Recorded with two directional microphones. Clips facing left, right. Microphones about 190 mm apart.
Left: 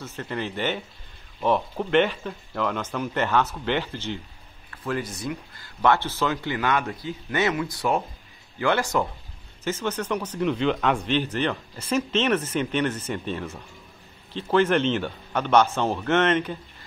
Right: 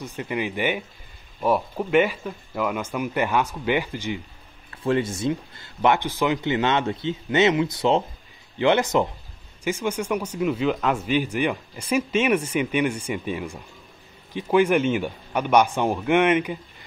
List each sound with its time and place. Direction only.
0.0 s speech: 15° right (ahead or behind)
4.8 s speech: 25° right (ahead or behind)